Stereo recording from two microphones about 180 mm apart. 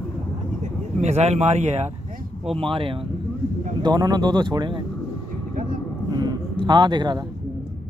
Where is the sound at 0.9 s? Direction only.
40° right (ahead or behind).